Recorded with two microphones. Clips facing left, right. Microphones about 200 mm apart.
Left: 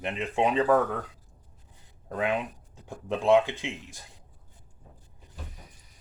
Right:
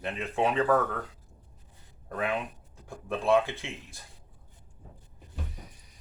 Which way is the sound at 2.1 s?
20° left (ahead or behind).